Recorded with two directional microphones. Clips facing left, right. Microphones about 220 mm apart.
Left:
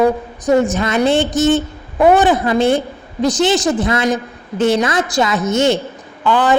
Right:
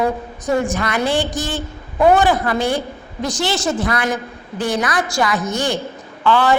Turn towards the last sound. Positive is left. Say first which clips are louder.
# left 1 dB
turn(degrees=15)  # may be behind; listen again after turning